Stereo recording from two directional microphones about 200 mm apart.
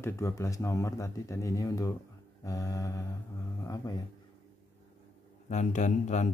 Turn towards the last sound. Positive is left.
turn(degrees=35)  # may be behind; listen again after turning